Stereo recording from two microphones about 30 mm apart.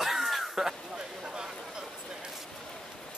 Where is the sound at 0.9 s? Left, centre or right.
Right.